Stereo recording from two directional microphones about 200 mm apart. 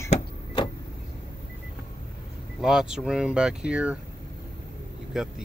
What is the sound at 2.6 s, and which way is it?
Speech, 5° right (ahead or behind).